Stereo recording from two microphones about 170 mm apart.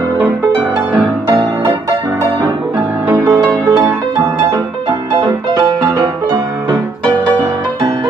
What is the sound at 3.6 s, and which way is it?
Music, 25° right (ahead or behind).